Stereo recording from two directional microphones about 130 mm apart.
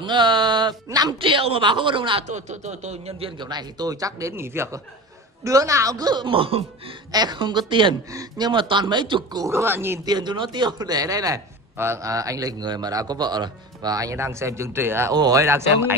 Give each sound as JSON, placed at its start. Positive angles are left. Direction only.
{"t": 0.0, "sound": "a sound", "side_deg": -35}
{"t": 0.8, "sound": "speech", "side_deg": -30}
{"t": 2.2, "sound": "speech", "side_deg": -65}
{"t": 7.1, "sound": "speech", "side_deg": -35}
{"t": 9.5, "sound": "a man's voice", "side_deg": -20}
{"t": 10.0, "sound": "a man's voice", "side_deg": -35}